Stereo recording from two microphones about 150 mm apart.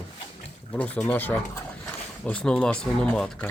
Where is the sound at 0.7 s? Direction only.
10° left (ahead or behind).